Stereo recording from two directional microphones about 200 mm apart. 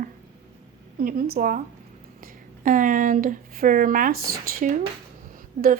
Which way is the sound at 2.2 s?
45° right (ahead or behind).